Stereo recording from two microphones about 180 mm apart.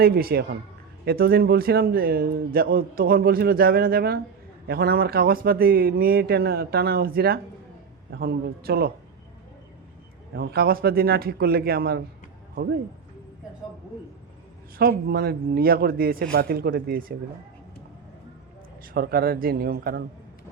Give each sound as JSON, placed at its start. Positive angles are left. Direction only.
{"t": 0.0, "sound": "a man's voice", "side_deg": -55}
{"t": 10.3, "sound": "a man's voice", "side_deg": -60}
{"t": 14.8, "sound": "a man's voice", "side_deg": -55}
{"t": 18.9, "sound": "a man's voice", "side_deg": -55}